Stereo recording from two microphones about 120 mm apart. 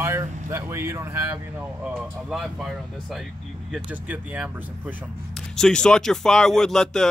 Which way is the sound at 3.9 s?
15° right (ahead or behind).